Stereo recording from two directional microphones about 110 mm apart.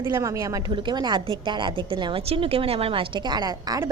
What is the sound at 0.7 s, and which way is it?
A woman's voice, 45° right (ahead or behind).